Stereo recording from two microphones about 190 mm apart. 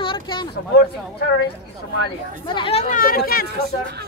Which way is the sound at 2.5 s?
25° left (ahead or behind).